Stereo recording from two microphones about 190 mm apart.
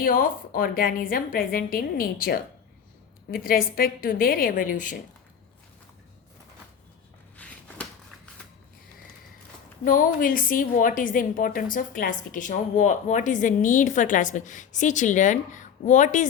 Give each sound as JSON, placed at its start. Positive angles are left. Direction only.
{"t": 0.0, "sound": "a woman's voice", "side_deg": 50}
{"t": 7.3, "sound": "a sound", "side_deg": 5}
{"t": 9.8, "sound": "a woman's voice", "side_deg": 45}